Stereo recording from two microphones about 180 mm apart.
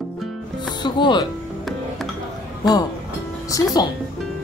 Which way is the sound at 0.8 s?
25° left (ahead or behind).